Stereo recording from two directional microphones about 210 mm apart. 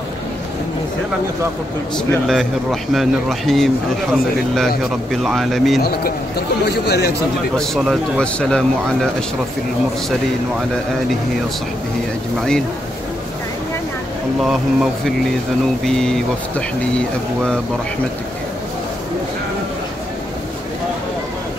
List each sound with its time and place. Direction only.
2.0 s speech: centre (ahead or behind)
5.8 s a man's voice: 45° left (ahead or behind)
7.5 s speech: centre (ahead or behind)
14.4 s speech: centre (ahead or behind)